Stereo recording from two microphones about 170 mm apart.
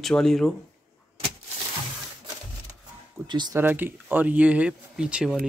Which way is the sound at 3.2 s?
25° right (ahead or behind).